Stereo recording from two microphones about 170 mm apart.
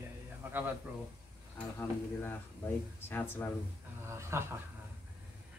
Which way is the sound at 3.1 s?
10° left (ahead or behind).